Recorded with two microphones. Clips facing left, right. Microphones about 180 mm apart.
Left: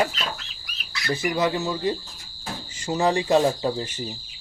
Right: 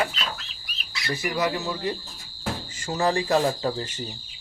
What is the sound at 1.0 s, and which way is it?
Speech, 25° left (ahead or behind).